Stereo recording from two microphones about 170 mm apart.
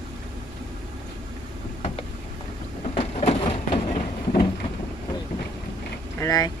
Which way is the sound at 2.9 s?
35° left (ahead or behind).